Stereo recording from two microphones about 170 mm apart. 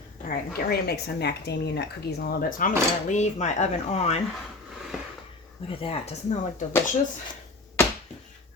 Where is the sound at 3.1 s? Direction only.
40° left (ahead or behind).